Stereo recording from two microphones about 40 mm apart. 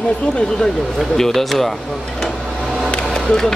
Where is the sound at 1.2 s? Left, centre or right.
Centre.